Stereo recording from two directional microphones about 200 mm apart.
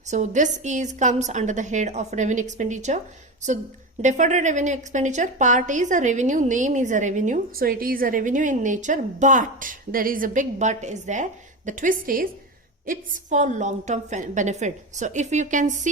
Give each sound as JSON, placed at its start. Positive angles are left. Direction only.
{"t": 0.1, "sound": "a woman's voice", "side_deg": -35}
{"t": 4.0, "sound": "a woman's voice", "side_deg": -35}